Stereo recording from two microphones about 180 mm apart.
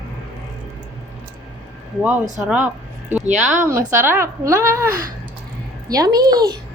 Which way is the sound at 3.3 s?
45° right (ahead or behind).